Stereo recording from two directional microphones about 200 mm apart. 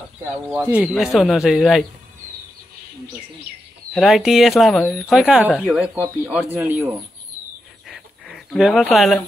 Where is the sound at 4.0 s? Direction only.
Centre (ahead or behind).